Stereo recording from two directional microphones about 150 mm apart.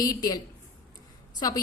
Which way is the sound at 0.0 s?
25° left (ahead or behind).